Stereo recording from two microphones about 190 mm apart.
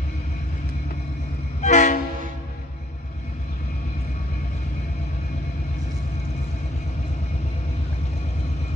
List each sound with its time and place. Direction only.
1.6 s train: 40° left (ahead or behind)